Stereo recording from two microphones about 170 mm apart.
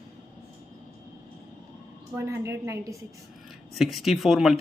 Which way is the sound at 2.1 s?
15° right (ahead or behind).